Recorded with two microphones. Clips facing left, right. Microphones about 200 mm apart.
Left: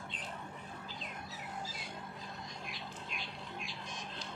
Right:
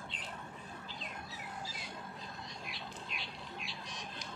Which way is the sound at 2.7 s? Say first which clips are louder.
Even; 45° left (ahead or behind).